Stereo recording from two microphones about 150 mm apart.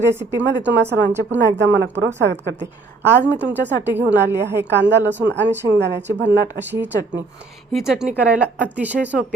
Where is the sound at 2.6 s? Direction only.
15° right (ahead or behind).